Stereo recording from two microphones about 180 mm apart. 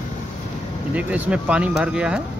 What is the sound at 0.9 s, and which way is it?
Speech, 10° right (ahead or behind).